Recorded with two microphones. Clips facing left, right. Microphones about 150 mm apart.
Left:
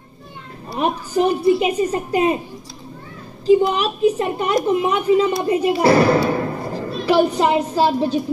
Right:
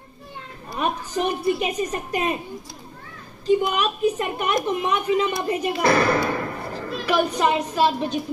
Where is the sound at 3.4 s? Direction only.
30° left (ahead or behind).